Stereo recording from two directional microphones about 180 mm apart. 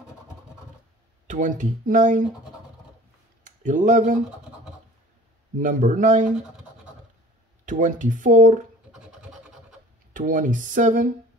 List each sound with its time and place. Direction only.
1.2 s speech: 45° right (ahead or behind)
3.6 s speech: 45° right (ahead or behind)
5.6 s speech: 45° right (ahead or behind)
7.6 s speech: 45° right (ahead or behind)
9.0 s scratch: 5° right (ahead or behind)
10.1 s speech: 45° right (ahead or behind)